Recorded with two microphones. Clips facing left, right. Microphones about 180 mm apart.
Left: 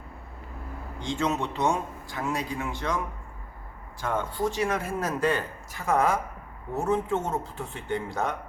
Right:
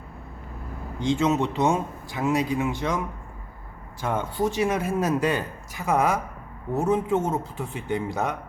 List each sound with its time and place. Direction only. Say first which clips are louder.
1.0 s speech: right 6 dB; 20° right (ahead or behind)
4.0 s a man's voice: right 3 dB; 20° right (ahead or behind)